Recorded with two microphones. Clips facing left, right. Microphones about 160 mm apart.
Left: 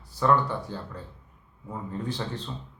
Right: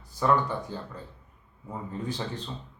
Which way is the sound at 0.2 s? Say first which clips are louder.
Left 1 dB; 15° right (ahead or behind).